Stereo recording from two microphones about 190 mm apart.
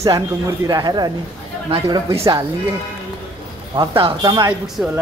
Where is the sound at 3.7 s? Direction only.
25° right (ahead or behind); by 4.9 s 10° right (ahead or behind).